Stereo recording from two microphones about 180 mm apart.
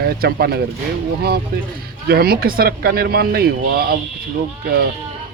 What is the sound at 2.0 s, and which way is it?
Speech, 55° right (ahead or behind).